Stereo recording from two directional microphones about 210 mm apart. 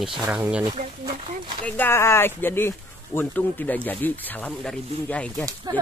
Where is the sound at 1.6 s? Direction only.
10° left (ahead or behind).